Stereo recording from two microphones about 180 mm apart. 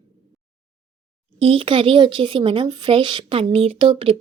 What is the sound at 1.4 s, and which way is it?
Speech, 30° right (ahead or behind).